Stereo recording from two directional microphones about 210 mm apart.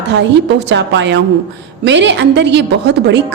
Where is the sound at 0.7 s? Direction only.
55° right (ahead or behind).